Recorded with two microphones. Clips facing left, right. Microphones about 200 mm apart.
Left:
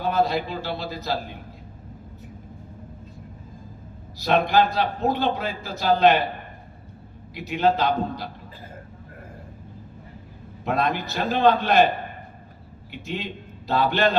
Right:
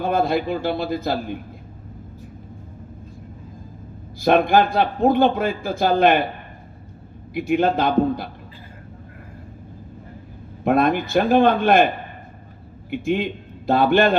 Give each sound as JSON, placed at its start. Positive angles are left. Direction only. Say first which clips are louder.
{"t": 0.0, "sound": "a man's voice", "louder": "right 3 dB", "side_deg": -50}
{"t": 4.2, "sound": "a man's voice", "louder": "right 4 dB", "side_deg": -50}
{"t": 7.3, "sound": "a man's voice", "louder": "right 3 dB", "side_deg": -50}
{"t": 10.6, "sound": "a man's voice", "louder": "right 6 dB", "side_deg": -50}
{"t": 12.9, "sound": "a man's voice", "louder": "right 10 dB", "side_deg": -50}